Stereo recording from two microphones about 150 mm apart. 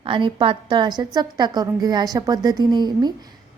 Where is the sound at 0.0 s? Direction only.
35° right (ahead or behind).